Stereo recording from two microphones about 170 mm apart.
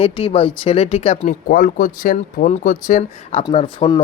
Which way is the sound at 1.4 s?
55° left (ahead or behind).